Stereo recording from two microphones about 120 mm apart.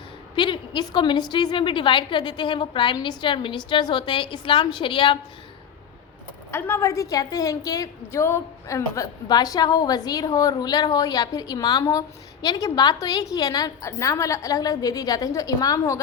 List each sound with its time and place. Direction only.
0.3 s a woman's voice: 40° left (ahead or behind)
6.5 s a woman's voice: 20° left (ahead or behind)